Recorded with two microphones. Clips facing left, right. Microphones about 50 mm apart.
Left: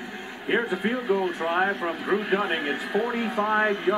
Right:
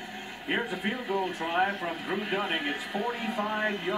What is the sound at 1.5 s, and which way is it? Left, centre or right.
Speech, left.